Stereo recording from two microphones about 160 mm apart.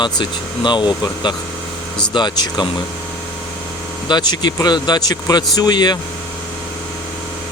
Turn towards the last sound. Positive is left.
turn(degrees=25)  # may be behind; listen again after turning